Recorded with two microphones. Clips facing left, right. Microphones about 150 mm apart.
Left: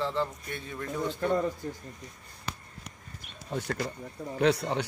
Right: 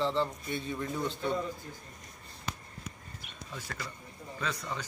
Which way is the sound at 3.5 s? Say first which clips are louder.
Left 10 dB; 60° left (ahead or behind).